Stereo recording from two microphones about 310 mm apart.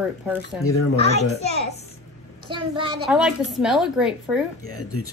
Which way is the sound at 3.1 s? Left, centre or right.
Centre.